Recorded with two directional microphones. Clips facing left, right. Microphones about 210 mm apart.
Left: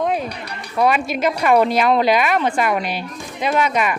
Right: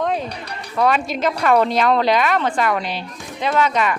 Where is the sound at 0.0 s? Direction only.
10° left (ahead or behind).